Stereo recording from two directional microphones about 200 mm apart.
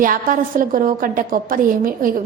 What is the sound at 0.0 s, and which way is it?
A woman's voice, 45° right (ahead or behind).